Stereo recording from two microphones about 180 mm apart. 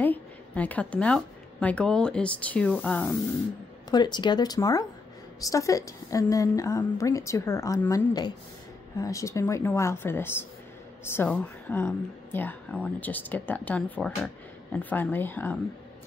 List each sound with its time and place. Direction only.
0.0 s a woman's voice: 10° left (ahead or behind)
3.9 s speech: 25° left (ahead or behind)